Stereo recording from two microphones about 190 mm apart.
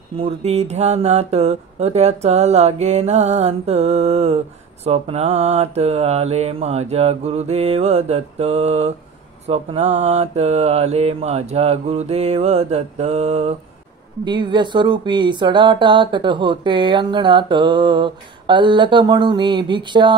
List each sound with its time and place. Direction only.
0.2 s speech: 35° right (ahead or behind)
14.2 s speech: 25° right (ahead or behind)